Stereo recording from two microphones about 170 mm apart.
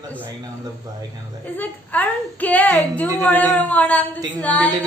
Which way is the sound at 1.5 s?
10° left (ahead or behind).